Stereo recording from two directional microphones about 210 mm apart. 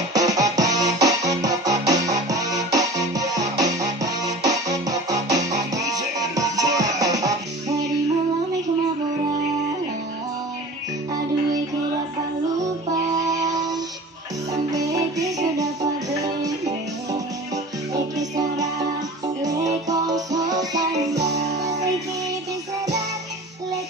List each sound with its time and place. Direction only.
0.1 s music: 15° right (ahead or behind)
13.3 s music: 15° right (ahead or behind)
14.7 s music: 15° right (ahead or behind)
19.4 s music: 15° right (ahead or behind)